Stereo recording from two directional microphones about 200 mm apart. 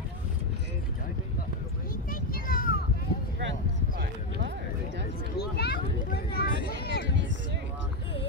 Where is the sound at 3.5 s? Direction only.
60° right (ahead or behind).